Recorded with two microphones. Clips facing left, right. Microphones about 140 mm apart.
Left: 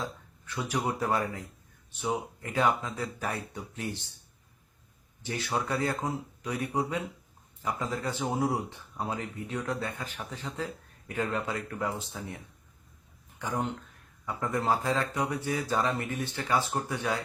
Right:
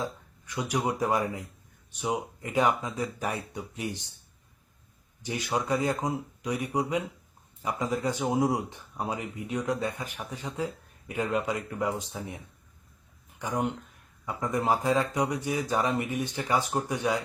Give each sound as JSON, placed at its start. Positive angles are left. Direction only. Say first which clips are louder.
{"t": 0.0, "sound": "speech", "louder": "right 3 dB", "side_deg": -15}
{"t": 5.2, "sound": "speech", "louder": "right 2 dB", "side_deg": -15}
{"t": 13.4, "sound": "speech", "louder": "right 2 dB", "side_deg": -15}